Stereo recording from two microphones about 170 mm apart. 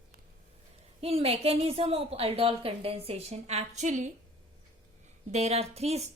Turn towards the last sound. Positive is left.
turn(degrees=-40)  # may be behind; listen again after turning